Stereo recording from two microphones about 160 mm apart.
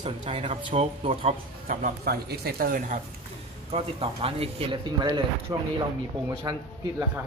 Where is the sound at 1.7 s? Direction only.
50° right (ahead or behind).